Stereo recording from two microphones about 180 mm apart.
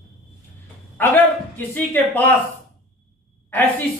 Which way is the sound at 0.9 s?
10° left (ahead or behind).